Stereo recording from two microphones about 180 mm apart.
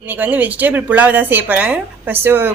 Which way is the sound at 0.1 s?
10° right (ahead or behind).